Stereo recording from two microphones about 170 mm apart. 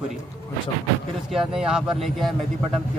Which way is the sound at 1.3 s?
5° right (ahead or behind).